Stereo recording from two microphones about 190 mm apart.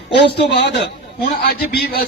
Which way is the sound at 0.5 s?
65° left (ahead or behind).